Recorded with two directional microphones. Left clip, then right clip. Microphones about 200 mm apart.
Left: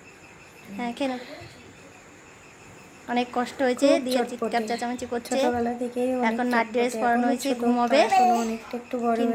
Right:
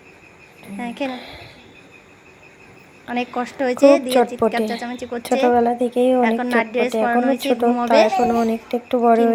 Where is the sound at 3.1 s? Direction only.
10° right (ahead or behind).